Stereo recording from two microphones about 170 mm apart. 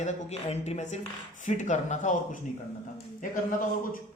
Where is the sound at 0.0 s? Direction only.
40° left (ahead or behind).